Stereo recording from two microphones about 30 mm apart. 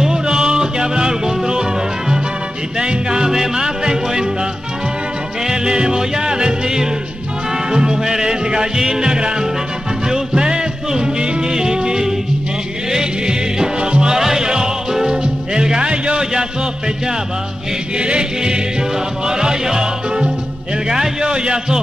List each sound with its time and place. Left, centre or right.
0.0 s music: right
5.5 s music: right
14.1 s music: centre
15.2 s speech: right
17.9 s chant: right
19.2 s music: right
21.2 s music: right